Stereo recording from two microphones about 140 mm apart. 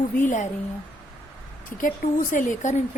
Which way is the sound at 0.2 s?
65° left (ahead or behind).